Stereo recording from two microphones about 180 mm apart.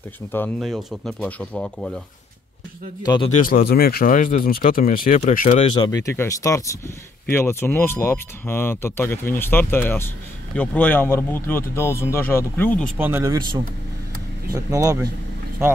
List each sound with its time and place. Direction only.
0.2 s speech: 5° left (ahead or behind)
3.3 s speech: 50° left (ahead or behind)
5.5 s speech: 30° left (ahead or behind)
6.0 s speech: 15° left (ahead or behind)
12.9 s speech: 10° right (ahead or behind)
14.5 s speech: 20° right (ahead or behind)